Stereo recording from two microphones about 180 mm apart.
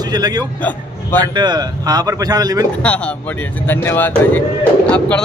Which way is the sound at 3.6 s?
10° left (ahead or behind).